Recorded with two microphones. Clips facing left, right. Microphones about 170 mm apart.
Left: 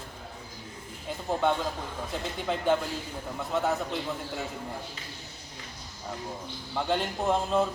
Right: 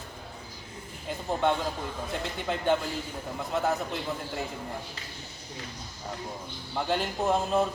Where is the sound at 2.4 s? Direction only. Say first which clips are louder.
Left 1 dB; centre (ahead or behind).